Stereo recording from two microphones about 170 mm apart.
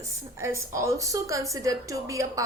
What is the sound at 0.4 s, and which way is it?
A woman's voice, 15° right (ahead or behind).